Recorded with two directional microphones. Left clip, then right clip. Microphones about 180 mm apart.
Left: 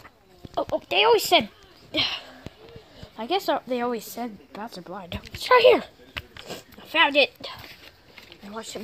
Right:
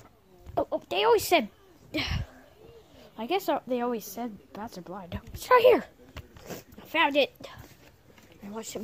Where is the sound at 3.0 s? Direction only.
5° right (ahead or behind).